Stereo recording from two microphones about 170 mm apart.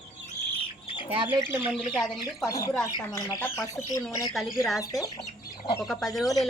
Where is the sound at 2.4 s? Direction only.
20° left (ahead or behind).